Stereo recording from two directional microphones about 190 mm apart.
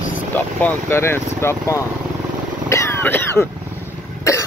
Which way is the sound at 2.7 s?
15° left (ahead or behind).